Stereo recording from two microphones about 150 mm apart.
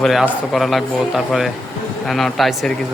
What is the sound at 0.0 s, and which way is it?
A man's voice, centre (ahead or behind).